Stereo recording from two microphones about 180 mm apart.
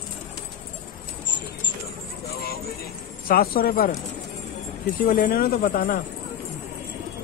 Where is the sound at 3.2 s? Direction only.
55° left (ahead or behind).